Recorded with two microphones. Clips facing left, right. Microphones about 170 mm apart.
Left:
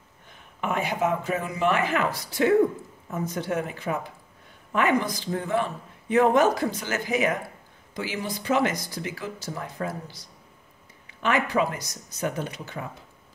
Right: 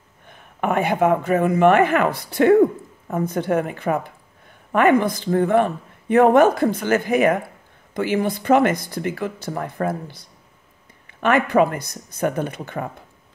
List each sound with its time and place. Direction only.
0.3 s a woman's voice: 55° right (ahead or behind)